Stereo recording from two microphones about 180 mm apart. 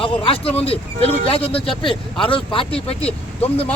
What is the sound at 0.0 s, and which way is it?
Speech, 30° left (ahead or behind).